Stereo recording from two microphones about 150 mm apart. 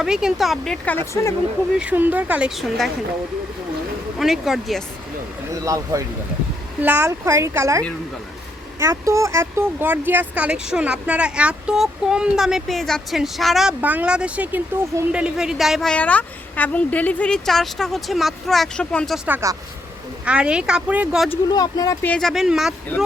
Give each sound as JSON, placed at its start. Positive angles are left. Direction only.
{"t": 0.0, "sound": "a woman's voice", "side_deg": -5}
{"t": 1.8, "sound": "speech", "side_deg": -10}
{"t": 4.2, "sound": "a woman's voice", "side_deg": 0}
{"t": 5.6, "sound": "a woman's voice", "side_deg": -20}
{"t": 19.3, "sound": "speech", "side_deg": -20}
{"t": 20.2, "sound": "speech", "side_deg": -5}
{"t": 21.5, "sound": "speech", "side_deg": 25}
{"t": 22.0, "sound": "a woman's voice", "side_deg": 5}